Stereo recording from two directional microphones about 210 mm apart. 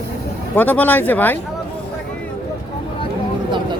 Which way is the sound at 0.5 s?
10° left (ahead or behind).